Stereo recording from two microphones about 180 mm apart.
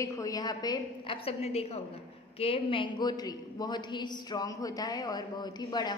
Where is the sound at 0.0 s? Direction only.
15° left (ahead or behind).